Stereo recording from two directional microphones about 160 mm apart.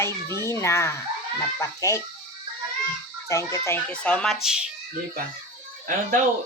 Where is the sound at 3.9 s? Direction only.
5° left (ahead or behind).